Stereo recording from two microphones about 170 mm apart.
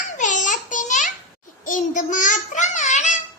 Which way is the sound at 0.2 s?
50° left (ahead or behind).